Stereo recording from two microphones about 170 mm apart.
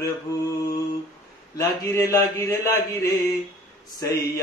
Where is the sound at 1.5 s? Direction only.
20° left (ahead or behind).